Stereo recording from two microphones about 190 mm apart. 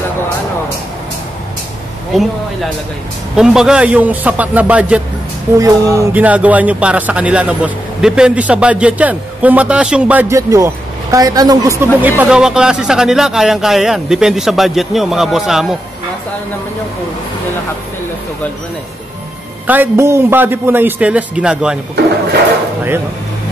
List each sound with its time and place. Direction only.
3.3 s speech: 5° right (ahead or behind)
19.6 s speech: 10° right (ahead or behind)